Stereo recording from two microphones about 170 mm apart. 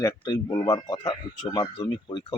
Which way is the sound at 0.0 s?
25° left (ahead or behind).